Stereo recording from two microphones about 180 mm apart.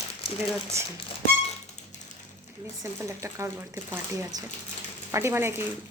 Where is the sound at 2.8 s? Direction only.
15° right (ahead or behind).